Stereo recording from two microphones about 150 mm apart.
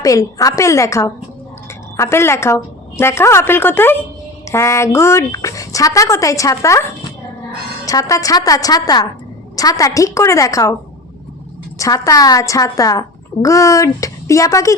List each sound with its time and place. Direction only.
0.0 s a child's voice: 20° left (ahead or behind)
11.8 s a child's voice: 20° left (ahead or behind)